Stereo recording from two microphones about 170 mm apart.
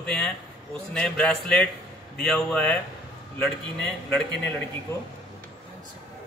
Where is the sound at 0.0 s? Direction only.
5° left (ahead or behind).